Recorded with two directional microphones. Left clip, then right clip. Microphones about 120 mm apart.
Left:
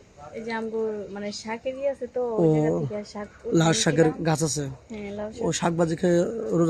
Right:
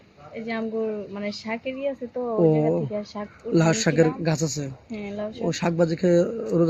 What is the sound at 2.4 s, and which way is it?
Speech, 30° left (ahead or behind).